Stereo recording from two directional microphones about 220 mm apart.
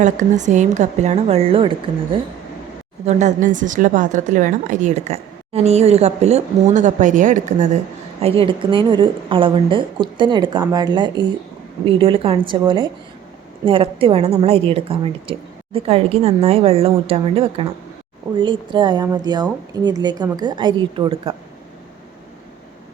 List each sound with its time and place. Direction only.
0.0 s a woman's voice: 35° right (ahead or behind)
3.1 s a woman's voice: 35° right (ahead or behind)